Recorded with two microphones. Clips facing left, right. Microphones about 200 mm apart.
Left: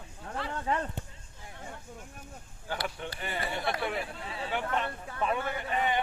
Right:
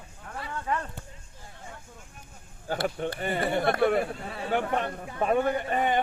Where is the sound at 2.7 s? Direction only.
45° right (ahead or behind).